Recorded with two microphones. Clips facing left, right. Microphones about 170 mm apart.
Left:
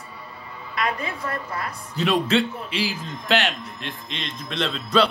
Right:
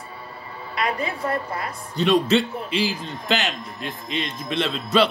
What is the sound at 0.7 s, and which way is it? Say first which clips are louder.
Speech: right 1 dB; 30° right (ahead or behind).